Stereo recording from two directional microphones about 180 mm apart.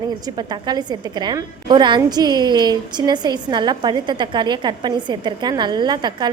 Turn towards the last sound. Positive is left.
turn(degrees=-25)  # may be behind; listen again after turning